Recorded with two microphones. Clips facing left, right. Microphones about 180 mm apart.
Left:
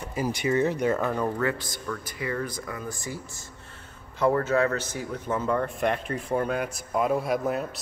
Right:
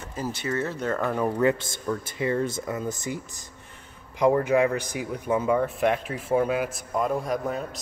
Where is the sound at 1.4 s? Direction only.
25° right (ahead or behind).